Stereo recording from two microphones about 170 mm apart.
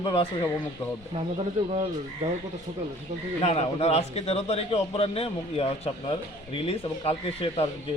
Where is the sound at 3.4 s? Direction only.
40° left (ahead or behind).